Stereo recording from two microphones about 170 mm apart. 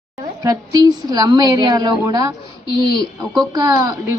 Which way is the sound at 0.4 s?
20° right (ahead or behind).